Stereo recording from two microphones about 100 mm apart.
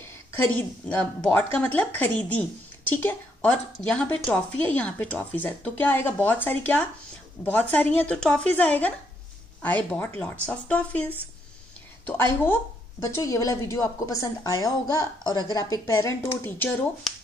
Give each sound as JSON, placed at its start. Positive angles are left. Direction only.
{"t": 0.4, "sound": "a woman's voice", "side_deg": 15}
{"t": 12.2, "sound": "a woman's voice", "side_deg": 25}
{"t": 16.4, "sound": "speech", "side_deg": 20}